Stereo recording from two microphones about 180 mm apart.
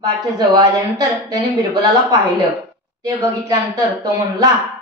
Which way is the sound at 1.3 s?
20° right (ahead or behind).